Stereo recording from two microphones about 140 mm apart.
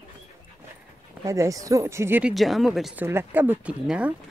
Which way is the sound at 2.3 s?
Centre (ahead or behind).